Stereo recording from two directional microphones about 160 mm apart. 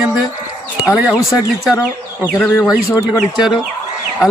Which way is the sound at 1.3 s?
20° left (ahead or behind).